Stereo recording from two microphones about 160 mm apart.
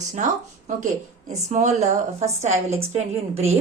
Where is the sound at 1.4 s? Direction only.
45° right (ahead or behind).